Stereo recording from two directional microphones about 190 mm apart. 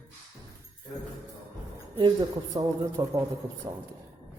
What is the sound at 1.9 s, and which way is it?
A man's voice, 25° right (ahead or behind).